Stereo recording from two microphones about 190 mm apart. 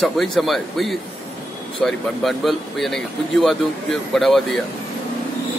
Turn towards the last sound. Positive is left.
turn(degrees=0)  # may be behind; listen again after turning